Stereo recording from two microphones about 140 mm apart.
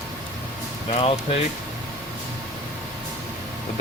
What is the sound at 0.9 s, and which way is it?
Speech, 45° left (ahead or behind).